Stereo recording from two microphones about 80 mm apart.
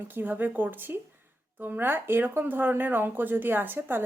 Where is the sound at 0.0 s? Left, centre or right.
Right.